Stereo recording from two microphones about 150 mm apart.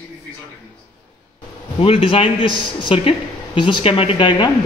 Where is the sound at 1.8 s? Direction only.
40° left (ahead or behind).